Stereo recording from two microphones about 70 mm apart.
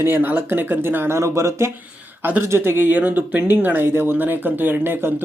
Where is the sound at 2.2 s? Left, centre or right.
Right.